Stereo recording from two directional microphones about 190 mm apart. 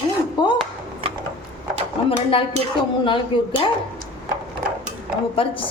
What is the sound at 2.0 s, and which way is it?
Speech, 30° left (ahead or behind).